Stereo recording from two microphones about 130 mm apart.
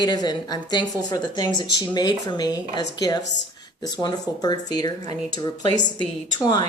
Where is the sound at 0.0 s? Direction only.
35° left (ahead or behind).